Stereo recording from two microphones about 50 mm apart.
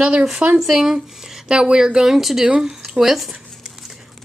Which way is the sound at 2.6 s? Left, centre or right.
Centre.